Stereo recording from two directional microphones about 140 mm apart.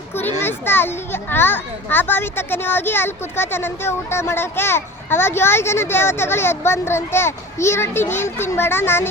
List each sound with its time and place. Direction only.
0.2 s a child's voice: 15° left (ahead or behind)